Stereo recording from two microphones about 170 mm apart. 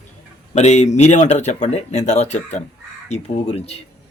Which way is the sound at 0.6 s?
40° left (ahead or behind).